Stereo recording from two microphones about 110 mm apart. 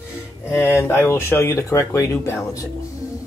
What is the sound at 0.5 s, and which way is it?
Speech, 20° left (ahead or behind).